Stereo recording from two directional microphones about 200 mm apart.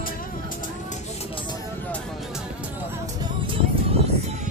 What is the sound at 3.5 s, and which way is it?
Music, 30° right (ahead or behind).